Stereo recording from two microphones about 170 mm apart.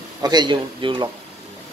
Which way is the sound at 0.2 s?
25° right (ahead or behind).